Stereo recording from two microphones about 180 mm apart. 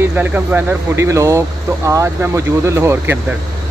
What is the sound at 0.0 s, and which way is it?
Speech, 10° right (ahead or behind).